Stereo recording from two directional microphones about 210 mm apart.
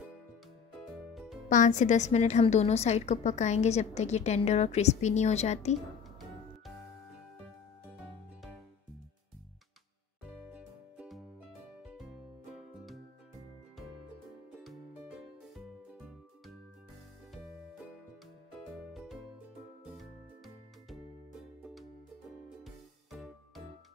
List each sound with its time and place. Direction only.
0.9 s music: centre (ahead or behind)
1.5 s a woman's voice: 35° left (ahead or behind)
10.5 s music: 5° right (ahead or behind)
14.6 s music: centre (ahead or behind)
18.9 s music: centre (ahead or behind)
23.1 s music: centre (ahead or behind)